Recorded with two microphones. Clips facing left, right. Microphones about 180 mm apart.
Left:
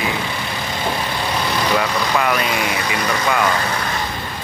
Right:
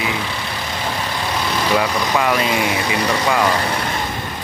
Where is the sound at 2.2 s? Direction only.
20° right (ahead or behind).